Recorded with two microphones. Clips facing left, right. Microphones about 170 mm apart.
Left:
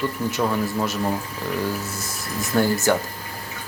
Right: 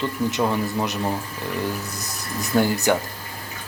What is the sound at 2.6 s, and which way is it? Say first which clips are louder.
Speech: even; 15° right (ahead or behind).